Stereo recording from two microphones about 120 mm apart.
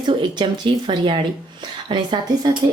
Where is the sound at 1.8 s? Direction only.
40° right (ahead or behind).